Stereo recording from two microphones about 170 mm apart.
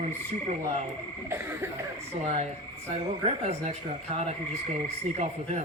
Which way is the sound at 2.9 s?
40° right (ahead or behind).